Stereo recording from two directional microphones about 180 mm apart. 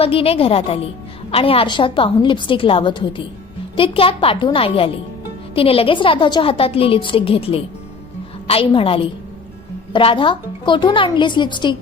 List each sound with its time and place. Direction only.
0.0 s a woman's voice: 30° left (ahead or behind)